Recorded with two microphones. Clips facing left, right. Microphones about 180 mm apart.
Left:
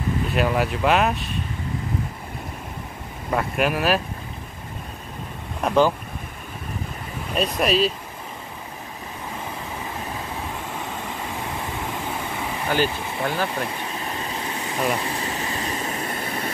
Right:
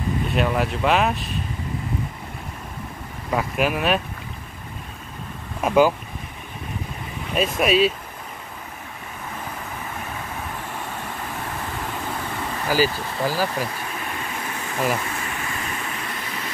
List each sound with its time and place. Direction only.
0.3 s speech: centre (ahead or behind)
3.3 s speech: centre (ahead or behind)
5.6 s speech: 5° right (ahead or behind)
7.3 s speech: centre (ahead or behind)
11.7 s vehicle: 10° left (ahead or behind)
12.6 s speech: 5° right (ahead or behind)
13.7 s vehicle: 25° left (ahead or behind)
15.0 s air conditioning: 30° left (ahead or behind)